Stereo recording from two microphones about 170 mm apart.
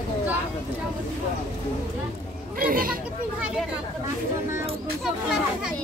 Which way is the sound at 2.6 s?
55° right (ahead or behind).